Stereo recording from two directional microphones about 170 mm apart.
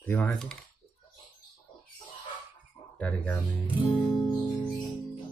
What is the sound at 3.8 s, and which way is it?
Music, 30° left (ahead or behind).